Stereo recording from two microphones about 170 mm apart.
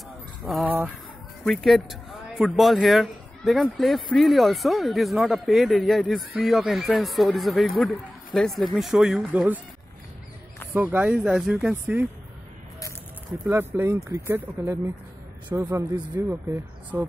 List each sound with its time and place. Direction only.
0.5 s speech: centre (ahead or behind)
10.7 s speech: 10° right (ahead or behind)
14.0 s speech: 15° right (ahead or behind)